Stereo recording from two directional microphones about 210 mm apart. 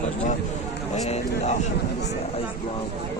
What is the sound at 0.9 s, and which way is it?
Speech, 30° left (ahead or behind).